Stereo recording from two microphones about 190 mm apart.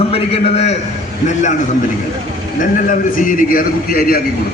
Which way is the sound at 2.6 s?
45° left (ahead or behind).